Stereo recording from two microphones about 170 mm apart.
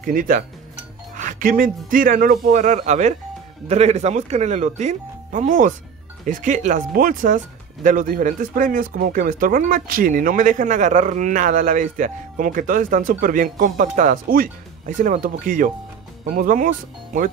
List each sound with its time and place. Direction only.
0.0 s speech: 55° right (ahead or behind)